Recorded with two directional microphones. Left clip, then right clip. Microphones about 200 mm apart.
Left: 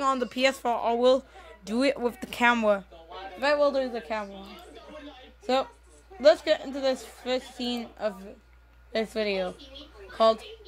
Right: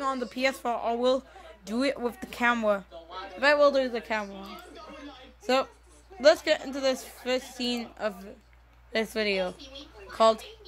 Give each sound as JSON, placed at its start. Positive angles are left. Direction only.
{"t": 0.0, "sound": "speech", "side_deg": 10}
{"t": 3.3, "sound": "a woman's voice", "side_deg": -15}
{"t": 4.3, "sound": "chatter", "side_deg": -55}
{"t": 5.5, "sound": "a woman's voice", "side_deg": -10}
{"t": 9.6, "sound": "a sound", "side_deg": -55}
{"t": 10.1, "sound": "speech", "side_deg": -5}